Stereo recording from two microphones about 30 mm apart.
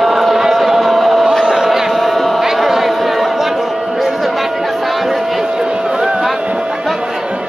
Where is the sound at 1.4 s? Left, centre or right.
Centre.